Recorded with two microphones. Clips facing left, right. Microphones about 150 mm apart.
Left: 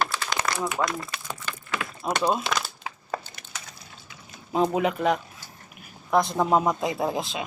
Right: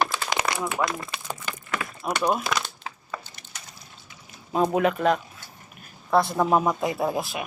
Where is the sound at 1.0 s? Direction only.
20° right (ahead or behind).